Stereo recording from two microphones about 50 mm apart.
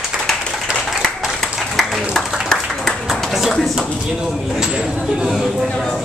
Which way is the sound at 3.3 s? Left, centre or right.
Centre.